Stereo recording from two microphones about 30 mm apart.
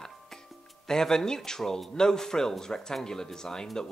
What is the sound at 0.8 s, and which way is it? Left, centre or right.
Speech, centre.